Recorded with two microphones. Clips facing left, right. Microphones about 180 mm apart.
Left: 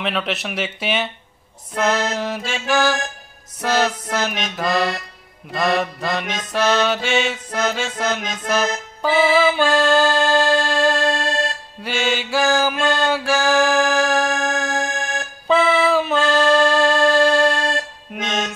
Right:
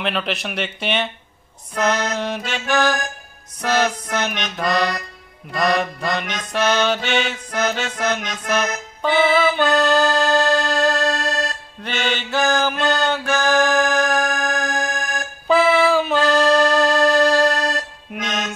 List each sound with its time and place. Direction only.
0.0 s music: centre (ahead or behind)
2.1 s music: 5° left (ahead or behind)
11.1 s music: 30° left (ahead or behind)
11.8 s music: 5° left (ahead or behind)
14.3 s music: 25° left (ahead or behind)
15.4 s music: centre (ahead or behind)